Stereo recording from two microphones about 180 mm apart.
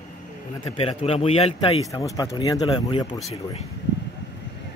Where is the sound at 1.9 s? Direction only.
20° left (ahead or behind).